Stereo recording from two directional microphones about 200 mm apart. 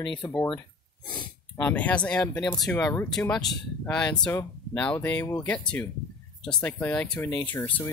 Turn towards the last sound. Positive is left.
turn(degrees=10)  # may be behind; listen again after turning